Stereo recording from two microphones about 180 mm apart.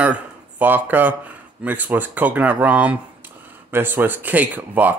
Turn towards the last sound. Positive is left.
turn(degrees=-10)  # may be behind; listen again after turning